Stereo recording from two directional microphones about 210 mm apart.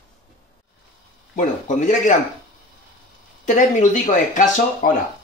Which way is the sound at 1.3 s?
35° left (ahead or behind).